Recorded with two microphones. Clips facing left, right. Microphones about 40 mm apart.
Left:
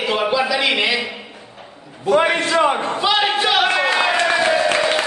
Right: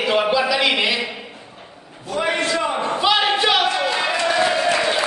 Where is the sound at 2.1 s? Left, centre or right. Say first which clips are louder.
Left 5 dB; left.